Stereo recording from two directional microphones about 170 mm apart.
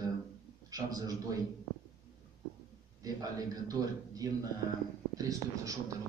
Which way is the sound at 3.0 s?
20° right (ahead or behind).